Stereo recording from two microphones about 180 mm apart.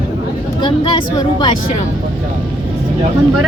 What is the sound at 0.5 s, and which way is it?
Vehicle, 25° left (ahead or behind).